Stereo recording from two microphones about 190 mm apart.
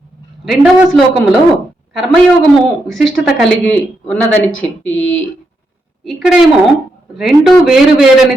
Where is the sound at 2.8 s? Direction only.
Centre (ahead or behind).